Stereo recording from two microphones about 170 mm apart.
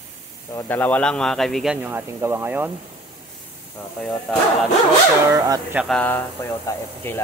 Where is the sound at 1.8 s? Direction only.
15° right (ahead or behind).